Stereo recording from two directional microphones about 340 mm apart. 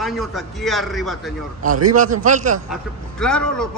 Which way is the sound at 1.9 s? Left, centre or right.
Right.